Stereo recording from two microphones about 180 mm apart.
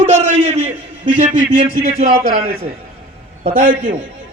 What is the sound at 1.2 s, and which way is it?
A man's voice, 25° right (ahead or behind).